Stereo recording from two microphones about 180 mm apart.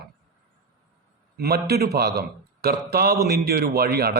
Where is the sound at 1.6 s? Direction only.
60° right (ahead or behind).